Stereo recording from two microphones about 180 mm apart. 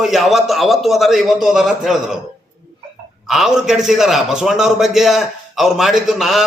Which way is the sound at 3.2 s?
Centre (ahead or behind).